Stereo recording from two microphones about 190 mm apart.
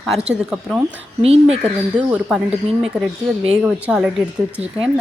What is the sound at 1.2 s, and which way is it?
Speech, 35° right (ahead or behind).